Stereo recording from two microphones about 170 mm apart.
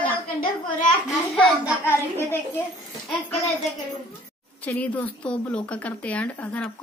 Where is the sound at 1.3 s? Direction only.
5° right (ahead or behind).